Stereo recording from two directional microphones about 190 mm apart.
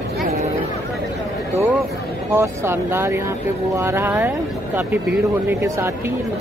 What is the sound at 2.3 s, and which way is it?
A woman's voice, 15° right (ahead or behind).